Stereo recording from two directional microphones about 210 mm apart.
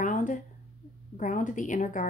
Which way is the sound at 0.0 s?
35° left (ahead or behind).